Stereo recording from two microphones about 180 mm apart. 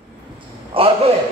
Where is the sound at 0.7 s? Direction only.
30° right (ahead or behind).